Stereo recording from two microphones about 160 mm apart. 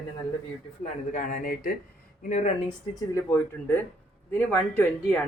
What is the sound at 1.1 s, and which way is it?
Speech, 60° left (ahead or behind).